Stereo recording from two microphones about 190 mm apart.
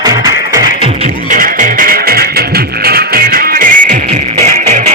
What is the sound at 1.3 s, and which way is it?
Music, 45° right (ahead or behind).